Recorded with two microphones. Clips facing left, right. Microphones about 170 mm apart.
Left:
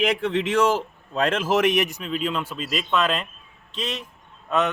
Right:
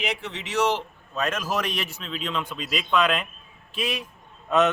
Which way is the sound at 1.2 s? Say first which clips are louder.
Left 7 dB; 25° left (ahead or behind).